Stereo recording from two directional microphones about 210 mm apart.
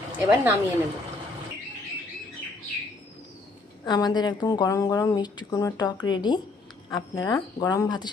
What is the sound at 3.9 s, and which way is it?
Speech, 20° left (ahead or behind).